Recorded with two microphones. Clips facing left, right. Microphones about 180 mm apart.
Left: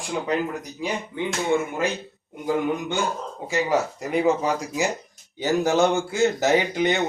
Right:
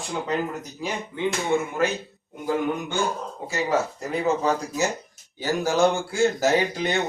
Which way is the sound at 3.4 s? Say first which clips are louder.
Left 2 dB; 15° left (ahead or behind).